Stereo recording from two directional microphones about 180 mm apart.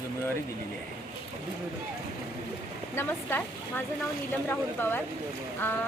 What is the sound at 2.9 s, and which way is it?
Speech, 10° left (ahead or behind).